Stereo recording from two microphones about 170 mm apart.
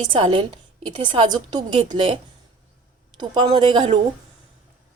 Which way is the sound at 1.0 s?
25° right (ahead or behind).